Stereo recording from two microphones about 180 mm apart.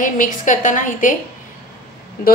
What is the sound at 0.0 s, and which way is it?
A woman's voice, 45° left (ahead or behind).